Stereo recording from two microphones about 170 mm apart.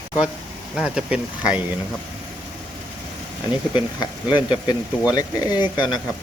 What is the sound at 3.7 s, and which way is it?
Speech, 25° left (ahead or behind).